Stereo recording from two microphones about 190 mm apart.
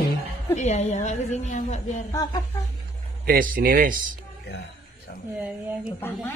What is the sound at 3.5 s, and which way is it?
Speech, 50° right (ahead or behind).